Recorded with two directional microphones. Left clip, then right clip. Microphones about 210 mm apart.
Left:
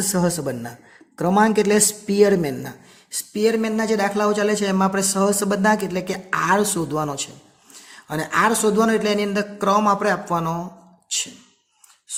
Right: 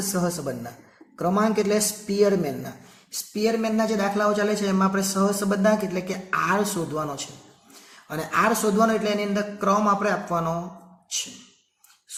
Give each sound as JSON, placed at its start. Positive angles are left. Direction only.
{"t": 0.1, "sound": "a man's voice", "side_deg": 50}